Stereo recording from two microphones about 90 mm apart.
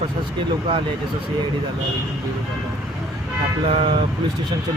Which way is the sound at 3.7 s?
75° right (ahead or behind).